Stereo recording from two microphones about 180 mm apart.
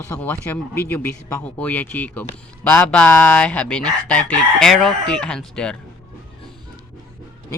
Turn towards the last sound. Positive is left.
turn(degrees=5)  # may be behind; listen again after turning